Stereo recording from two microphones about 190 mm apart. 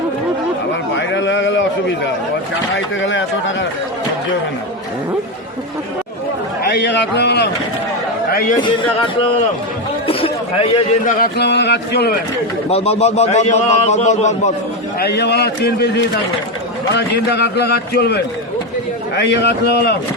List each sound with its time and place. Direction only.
0.9 s a sound: 70° left (ahead or behind)
2.7 s speech: 80° left
6.6 s a man's voice: 60° left (ahead or behind)
8.3 s a man's voice: 50° left (ahead or behind)
10.1 s a sound: 30° left (ahead or behind)
11.0 s a man's voice: 55° left (ahead or behind)
12.7 s a man's voice: 35° left (ahead or behind)
14.9 s a man's voice: 60° left (ahead or behind)
16.9 s a man's voice: 60° left (ahead or behind)